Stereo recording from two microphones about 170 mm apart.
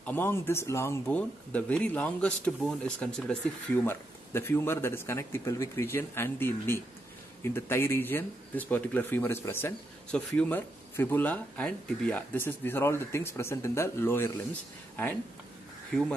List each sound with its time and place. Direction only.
0.0 s speech: 10° left (ahead or behind)